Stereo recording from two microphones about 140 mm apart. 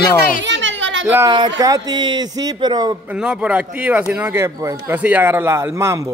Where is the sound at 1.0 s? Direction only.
15° right (ahead or behind).